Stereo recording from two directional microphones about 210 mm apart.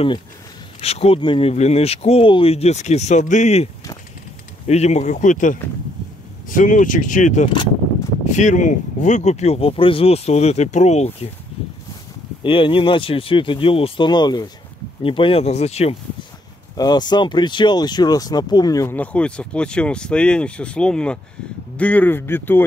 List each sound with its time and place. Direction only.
0.7 s speech: 30° left (ahead or behind)
4.6 s speech: 30° left (ahead or behind)
12.4 s speech: 25° left (ahead or behind)
16.7 s speech: 20° left (ahead or behind)